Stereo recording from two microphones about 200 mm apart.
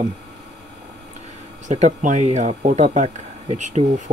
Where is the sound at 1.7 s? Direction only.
35° right (ahead or behind).